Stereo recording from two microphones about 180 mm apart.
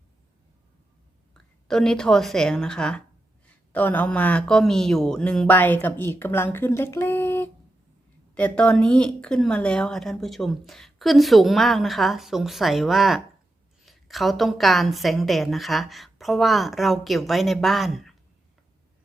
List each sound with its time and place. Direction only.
1.3 s a woman's voice: 5° left (ahead or behind)